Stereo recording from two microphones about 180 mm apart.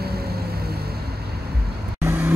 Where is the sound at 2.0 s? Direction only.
10° right (ahead or behind).